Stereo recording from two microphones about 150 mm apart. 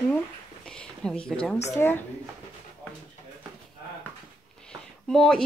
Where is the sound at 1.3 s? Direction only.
5° left (ahead or behind).